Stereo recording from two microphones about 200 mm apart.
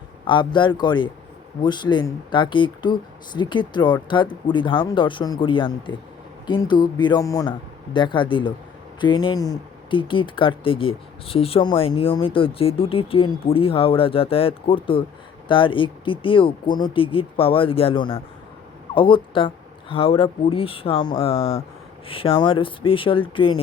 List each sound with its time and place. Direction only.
0.3 s speech: 25° left (ahead or behind)